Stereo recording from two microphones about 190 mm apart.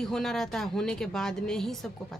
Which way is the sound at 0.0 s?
Centre (ahead or behind).